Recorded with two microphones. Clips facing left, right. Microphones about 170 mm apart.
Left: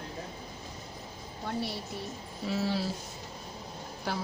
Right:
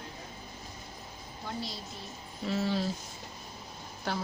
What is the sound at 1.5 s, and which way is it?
Speech, 65° left (ahead or behind).